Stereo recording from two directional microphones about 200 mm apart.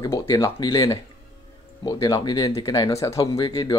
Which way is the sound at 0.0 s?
20° left (ahead or behind).